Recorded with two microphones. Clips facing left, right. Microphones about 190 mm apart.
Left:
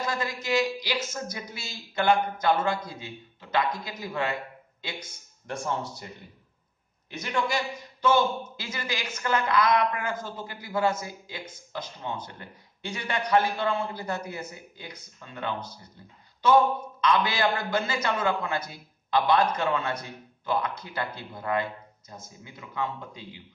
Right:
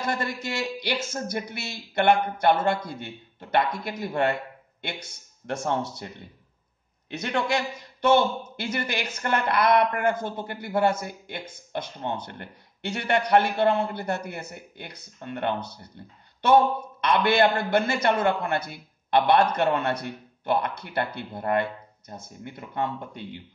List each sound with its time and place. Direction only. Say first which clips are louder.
0.2 s a man's voice: left 3 dB; 60° right (ahead or behind)
5.6 s speech: right 3 dB; 70° right (ahead or behind)
7.1 s a man's voice: right 3 dB; 65° right (ahead or behind)
17.0 s a man's voice: right 4 dB; 60° right (ahead or behind)